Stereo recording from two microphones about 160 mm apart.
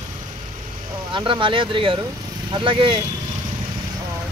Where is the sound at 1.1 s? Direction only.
30° right (ahead or behind).